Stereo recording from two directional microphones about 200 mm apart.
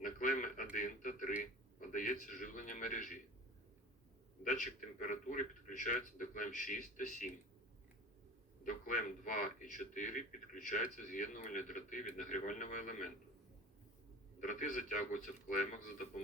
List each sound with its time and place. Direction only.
0.0 s radio: 40° left (ahead or behind)
1.9 s a sound: 40° left (ahead or behind)
4.4 s a man's voice: 40° left (ahead or behind)
8.6 s a man's voice: 40° left (ahead or behind)
14.4 s a man's voice: 40° left (ahead or behind)